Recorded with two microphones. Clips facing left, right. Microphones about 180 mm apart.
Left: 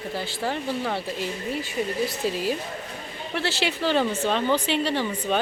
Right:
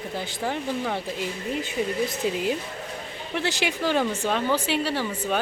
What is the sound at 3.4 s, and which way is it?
Speech, 15° right (ahead or behind).